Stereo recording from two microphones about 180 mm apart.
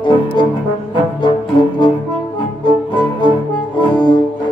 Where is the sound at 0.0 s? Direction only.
25° left (ahead or behind).